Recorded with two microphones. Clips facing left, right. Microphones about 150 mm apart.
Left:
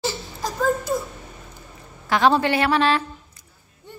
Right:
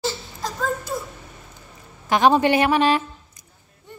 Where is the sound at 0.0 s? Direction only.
10° left (ahead or behind).